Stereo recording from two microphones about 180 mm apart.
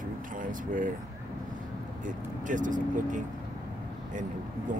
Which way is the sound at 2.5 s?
45° right (ahead or behind).